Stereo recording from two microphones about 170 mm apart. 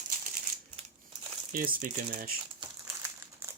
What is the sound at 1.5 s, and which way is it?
Speech, 55° right (ahead or behind).